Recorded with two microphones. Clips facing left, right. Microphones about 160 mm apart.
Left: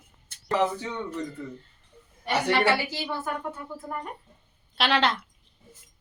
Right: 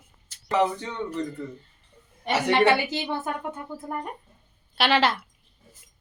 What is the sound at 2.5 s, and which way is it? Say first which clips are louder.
Speech: right 6 dB; 20° right (ahead or behind).